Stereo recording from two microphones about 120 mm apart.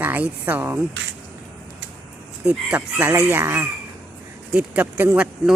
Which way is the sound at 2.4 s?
15° right (ahead or behind).